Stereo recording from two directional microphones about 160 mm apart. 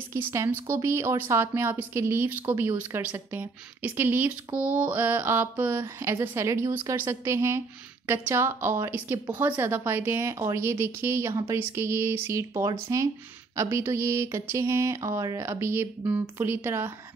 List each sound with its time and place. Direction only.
0.1 s speech: 15° right (ahead or behind)